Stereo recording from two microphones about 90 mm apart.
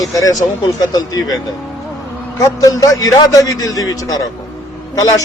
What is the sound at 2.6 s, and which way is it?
A man's voice, 40° left (ahead or behind).